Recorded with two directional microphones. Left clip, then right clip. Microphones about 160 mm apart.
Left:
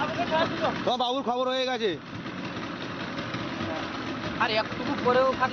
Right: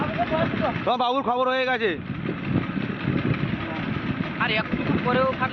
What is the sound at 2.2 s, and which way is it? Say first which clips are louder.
Vehicle: right 6 dB; 35° left (ahead or behind).